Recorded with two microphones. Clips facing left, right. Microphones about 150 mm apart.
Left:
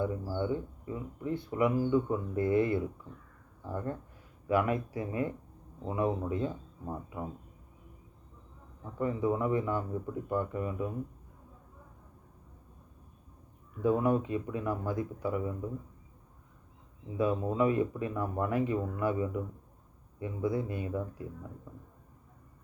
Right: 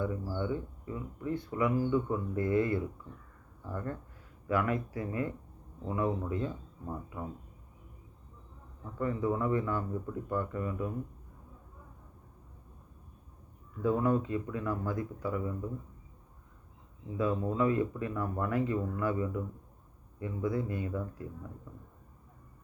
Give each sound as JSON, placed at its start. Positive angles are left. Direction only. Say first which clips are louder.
{"t": 0.0, "sound": "speech", "louder": "left 2 dB", "side_deg": 30}
{"t": 8.8, "sound": "speech", "louder": "left 1 dB", "side_deg": 20}
{"t": 13.8, "sound": "speech", "louder": "left 1 dB", "side_deg": 20}
{"t": 17.2, "sound": "speech", "louder": "left 1 dB", "side_deg": 20}
{"t": 20.4, "sound": "speech", "louder": "left 1 dB", "side_deg": 25}